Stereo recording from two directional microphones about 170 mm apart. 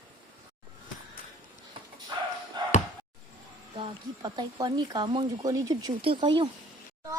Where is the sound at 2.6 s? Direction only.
25° right (ahead or behind).